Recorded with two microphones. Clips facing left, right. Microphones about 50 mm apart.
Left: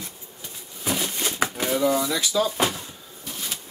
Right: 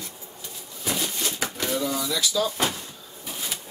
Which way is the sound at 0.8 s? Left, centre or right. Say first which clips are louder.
Left 2 dB; centre.